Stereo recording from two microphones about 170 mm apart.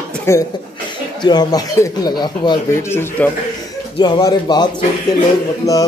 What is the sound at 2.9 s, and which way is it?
Speech, 15° left (ahead or behind).